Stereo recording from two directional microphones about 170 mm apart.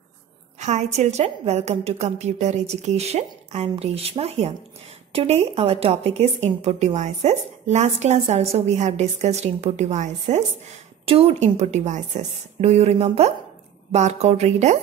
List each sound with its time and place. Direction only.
0.6 s speech: 45° right (ahead or behind)